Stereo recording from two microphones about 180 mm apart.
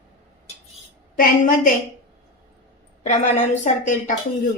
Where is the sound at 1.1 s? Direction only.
50° left (ahead or behind).